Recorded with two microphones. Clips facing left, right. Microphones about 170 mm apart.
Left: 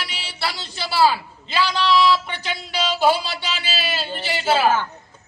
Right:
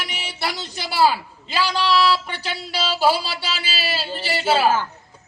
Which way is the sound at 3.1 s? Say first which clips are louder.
Even; 35° right (ahead or behind).